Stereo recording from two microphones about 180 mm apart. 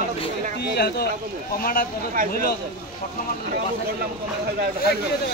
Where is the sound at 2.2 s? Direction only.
50° right (ahead or behind).